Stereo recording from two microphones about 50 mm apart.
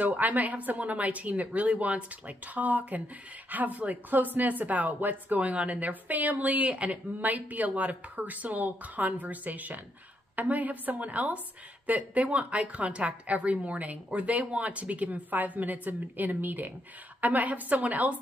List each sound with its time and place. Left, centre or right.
0.2 s a woman's voice: right